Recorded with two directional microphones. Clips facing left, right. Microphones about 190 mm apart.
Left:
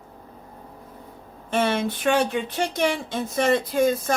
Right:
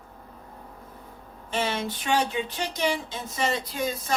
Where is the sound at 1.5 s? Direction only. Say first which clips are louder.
Left 6 dB; 55° left (ahead or behind).